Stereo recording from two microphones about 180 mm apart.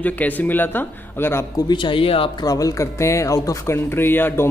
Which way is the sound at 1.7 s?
25° left (ahead or behind).